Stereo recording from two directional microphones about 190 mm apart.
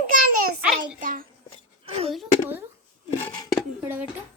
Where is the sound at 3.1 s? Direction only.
20° left (ahead or behind).